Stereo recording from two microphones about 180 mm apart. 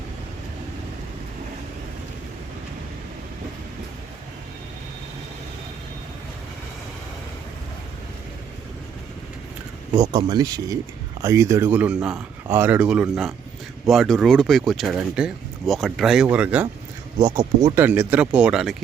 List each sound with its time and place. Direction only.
10.0 s speech: 20° right (ahead or behind)
17.2 s speech: 20° right (ahead or behind)
17.7 s speech: 10° right (ahead or behind)